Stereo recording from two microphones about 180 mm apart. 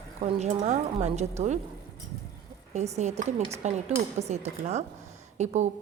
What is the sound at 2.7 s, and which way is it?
A woman's voice, 40° right (ahead or behind).